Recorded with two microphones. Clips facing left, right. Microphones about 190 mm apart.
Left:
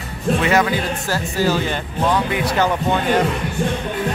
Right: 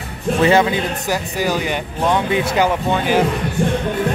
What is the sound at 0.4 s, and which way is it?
Speech, 25° right (ahead or behind).